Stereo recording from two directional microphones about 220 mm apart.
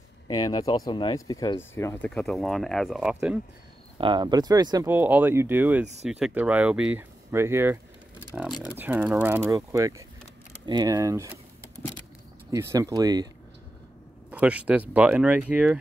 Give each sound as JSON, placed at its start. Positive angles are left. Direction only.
{"t": 0.3, "sound": "speech", "side_deg": 20}
{"t": 4.0, "sound": "speech", "side_deg": -20}
{"t": 12.4, "sound": "speech", "side_deg": -15}
{"t": 14.3, "sound": "speech", "side_deg": -5}